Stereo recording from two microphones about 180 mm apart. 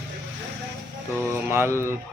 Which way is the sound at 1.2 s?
15° right (ahead or behind).